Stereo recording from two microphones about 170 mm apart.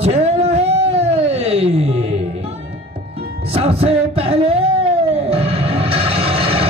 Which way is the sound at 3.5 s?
35° right (ahead or behind).